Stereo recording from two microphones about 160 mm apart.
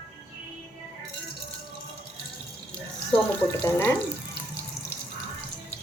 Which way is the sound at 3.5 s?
15° left (ahead or behind).